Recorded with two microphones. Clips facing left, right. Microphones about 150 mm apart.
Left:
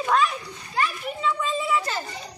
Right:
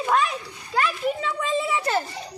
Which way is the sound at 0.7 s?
85° right.